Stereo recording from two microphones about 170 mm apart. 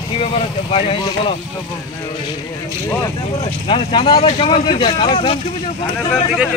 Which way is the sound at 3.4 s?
30° left (ahead or behind).